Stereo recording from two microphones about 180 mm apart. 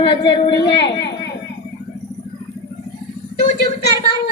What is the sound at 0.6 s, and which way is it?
Speech, 70° left (ahead or behind).